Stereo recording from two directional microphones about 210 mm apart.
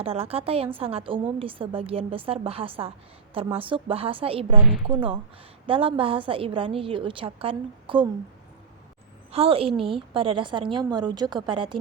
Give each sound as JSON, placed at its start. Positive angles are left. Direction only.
{"t": 0.0, "sound": "a woman's voice", "side_deg": -30}
{"t": 9.3, "sound": "a woman's voice", "side_deg": -25}